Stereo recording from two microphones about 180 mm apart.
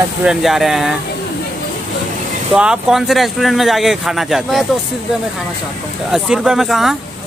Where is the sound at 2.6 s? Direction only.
5° right (ahead or behind).